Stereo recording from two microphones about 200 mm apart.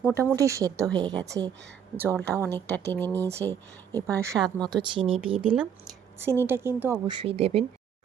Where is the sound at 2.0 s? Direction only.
5° left (ahead or behind).